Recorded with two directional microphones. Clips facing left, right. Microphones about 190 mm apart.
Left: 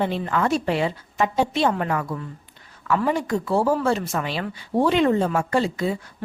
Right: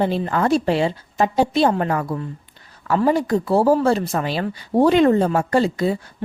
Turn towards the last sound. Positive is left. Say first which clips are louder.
# right 4 dB
turn(degrees=-35)  # may be behind; listen again after turning